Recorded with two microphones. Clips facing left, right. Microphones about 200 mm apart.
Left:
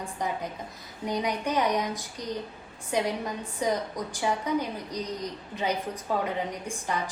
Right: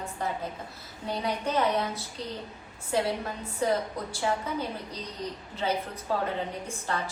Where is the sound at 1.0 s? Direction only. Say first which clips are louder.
Left 2 dB; 15° left (ahead or behind).